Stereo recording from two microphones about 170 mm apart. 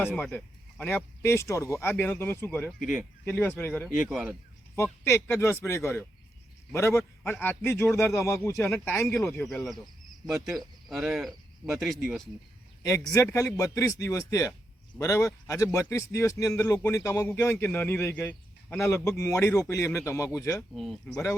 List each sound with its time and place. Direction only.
0.1 s a man's voice: 10° left (ahead or behind)
2.7 s speech: 5° right (ahead or behind)
3.2 s a man's voice: 10° left (ahead or behind)
3.8 s speech: 5° right (ahead or behind)
4.7 s a man's voice: 15° left (ahead or behind)
9.5 s speech: centre (ahead or behind)
12.8 s a man's voice: 20° left (ahead or behind)
20.7 s speech: centre (ahead or behind)